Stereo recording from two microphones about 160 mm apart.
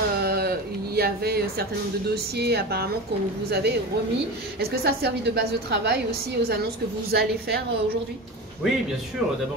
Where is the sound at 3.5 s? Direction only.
90° right.